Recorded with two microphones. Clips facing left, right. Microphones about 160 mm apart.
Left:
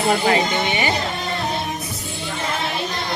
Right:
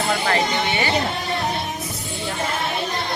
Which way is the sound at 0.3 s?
15° left (ahead or behind).